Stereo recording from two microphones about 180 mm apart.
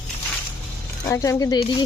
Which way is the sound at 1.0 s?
15° left (ahead or behind).